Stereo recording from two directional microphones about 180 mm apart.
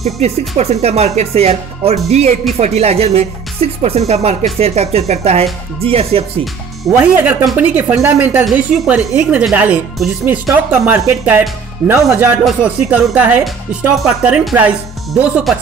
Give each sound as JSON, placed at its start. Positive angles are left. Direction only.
{"t": 0.2, "sound": "speech", "side_deg": -35}
{"t": 7.0, "sound": "speech", "side_deg": -10}